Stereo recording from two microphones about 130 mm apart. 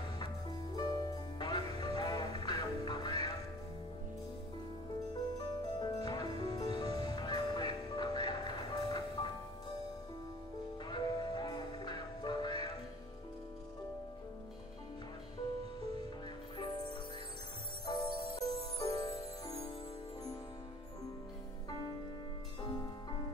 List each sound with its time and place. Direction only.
0.2 s music: 35° left (ahead or behind)
5.6 s music: 35° left (ahead or behind)
10.9 s music: 35° left (ahead or behind)
17.8 s music: 30° left (ahead or behind)
22.6 s music: 35° left (ahead or behind)